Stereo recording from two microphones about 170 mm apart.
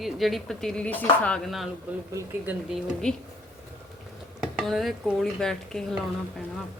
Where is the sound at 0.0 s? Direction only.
Centre (ahead or behind).